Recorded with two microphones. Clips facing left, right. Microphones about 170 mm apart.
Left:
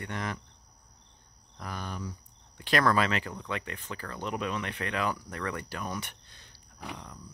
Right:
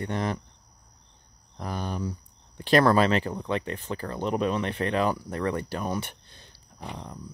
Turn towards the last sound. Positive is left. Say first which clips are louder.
# right 6 dB
turn(degrees=-30)  # may be behind; listen again after turning